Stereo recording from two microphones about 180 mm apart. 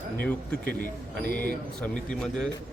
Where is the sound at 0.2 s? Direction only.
10° left (ahead or behind).